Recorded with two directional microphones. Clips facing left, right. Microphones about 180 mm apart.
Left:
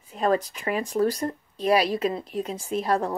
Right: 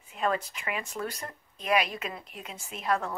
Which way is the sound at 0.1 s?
35° left (ahead or behind).